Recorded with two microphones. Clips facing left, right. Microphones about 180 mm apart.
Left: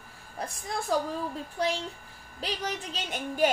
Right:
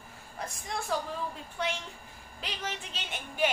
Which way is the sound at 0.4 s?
35° left (ahead or behind).